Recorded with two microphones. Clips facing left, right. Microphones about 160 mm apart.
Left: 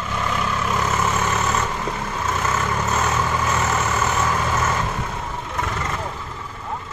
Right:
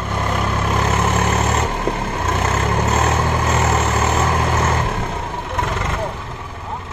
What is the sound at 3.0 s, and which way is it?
Vehicle, 50° right (ahead or behind).